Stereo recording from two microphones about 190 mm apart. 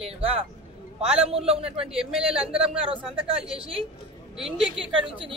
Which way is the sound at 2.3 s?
30° right (ahead or behind).